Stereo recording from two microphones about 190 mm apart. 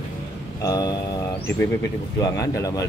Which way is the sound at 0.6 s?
20° left (ahead or behind).